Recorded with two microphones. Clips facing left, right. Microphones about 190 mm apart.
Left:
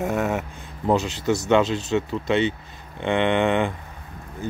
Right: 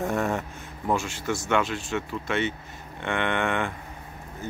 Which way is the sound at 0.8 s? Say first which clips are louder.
Left 6 dB; 20° left (ahead or behind).